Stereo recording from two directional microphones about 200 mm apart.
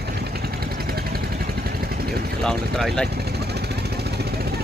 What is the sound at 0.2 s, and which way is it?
Vehicle, 50° right (ahead or behind).